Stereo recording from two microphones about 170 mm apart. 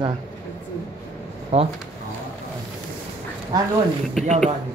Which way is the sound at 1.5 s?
40° right (ahead or behind).